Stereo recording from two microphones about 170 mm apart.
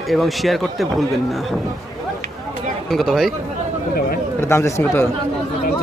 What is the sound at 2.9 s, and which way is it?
Speech, centre (ahead or behind).